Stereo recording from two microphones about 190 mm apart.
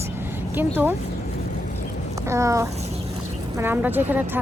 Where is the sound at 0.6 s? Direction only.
10° right (ahead or behind).